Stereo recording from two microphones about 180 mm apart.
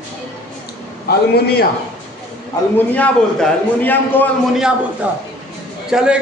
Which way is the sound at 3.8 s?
10° left (ahead or behind).